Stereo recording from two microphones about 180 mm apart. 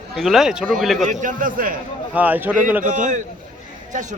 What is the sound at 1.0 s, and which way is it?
Speech, 45° right (ahead or behind).